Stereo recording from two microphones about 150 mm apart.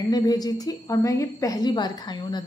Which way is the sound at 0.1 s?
25° left (ahead or behind).